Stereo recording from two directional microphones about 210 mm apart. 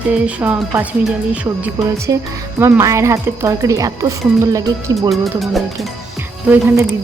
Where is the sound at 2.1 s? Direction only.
15° right (ahead or behind).